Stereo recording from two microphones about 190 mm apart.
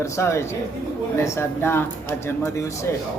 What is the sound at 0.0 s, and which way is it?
Speech, 15° left (ahead or behind).